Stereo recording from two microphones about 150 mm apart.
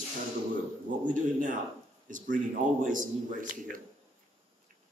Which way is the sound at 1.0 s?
60° right (ahead or behind).